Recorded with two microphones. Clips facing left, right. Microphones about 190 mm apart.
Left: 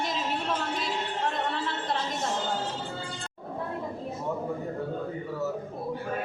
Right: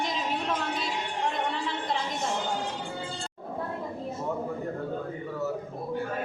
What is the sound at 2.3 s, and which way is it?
Speech, 15° right (ahead or behind).